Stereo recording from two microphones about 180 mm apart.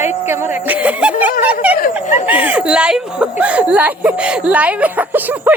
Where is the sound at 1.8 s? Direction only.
40° left (ahead or behind).